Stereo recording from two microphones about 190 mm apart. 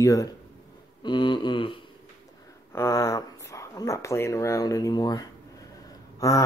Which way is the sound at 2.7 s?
15° left (ahead or behind).